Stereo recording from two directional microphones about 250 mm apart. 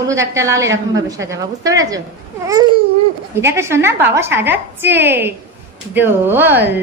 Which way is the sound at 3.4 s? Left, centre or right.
Centre.